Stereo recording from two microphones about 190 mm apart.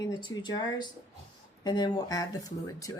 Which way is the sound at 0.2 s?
20° left (ahead or behind).